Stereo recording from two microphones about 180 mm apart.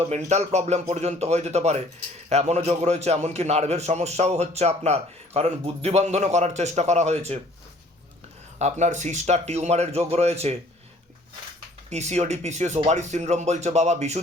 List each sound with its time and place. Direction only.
0.0 s a man's voice: 40° right (ahead or behind)
8.5 s a man's voice: 40° right (ahead or behind)
11.9 s a man's voice: 40° right (ahead or behind)